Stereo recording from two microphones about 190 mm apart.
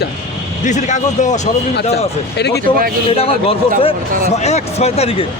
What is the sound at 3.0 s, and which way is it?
Speech, 30° left (ahead or behind).